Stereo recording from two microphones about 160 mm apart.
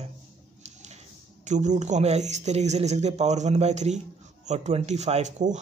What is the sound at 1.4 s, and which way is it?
Speech, 50° right (ahead or behind).